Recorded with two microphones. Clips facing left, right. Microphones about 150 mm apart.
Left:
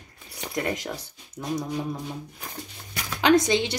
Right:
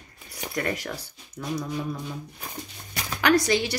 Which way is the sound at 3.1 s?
20° left (ahead or behind).